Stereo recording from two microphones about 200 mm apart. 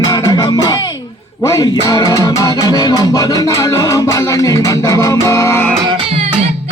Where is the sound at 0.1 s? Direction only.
20° left (ahead or behind).